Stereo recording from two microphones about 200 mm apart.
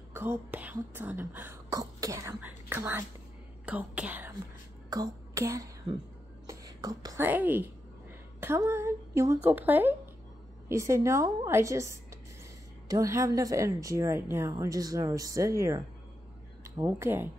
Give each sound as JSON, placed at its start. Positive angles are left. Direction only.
{"t": 0.1, "sound": "a woman's voice", "side_deg": -10}
{"t": 4.8, "sound": "a woman's voice", "side_deg": -20}